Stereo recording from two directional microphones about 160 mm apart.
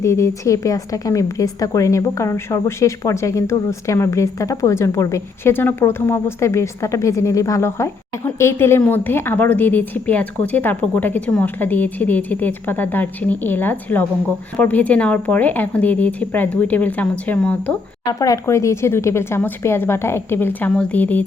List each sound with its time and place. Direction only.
0.0 s a woman's voice: 20° left (ahead or behind)
18.0 s a woman's voice: 25° left (ahead or behind)